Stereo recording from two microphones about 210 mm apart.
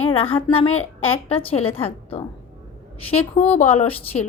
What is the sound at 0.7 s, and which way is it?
Speech, 75° left (ahead or behind).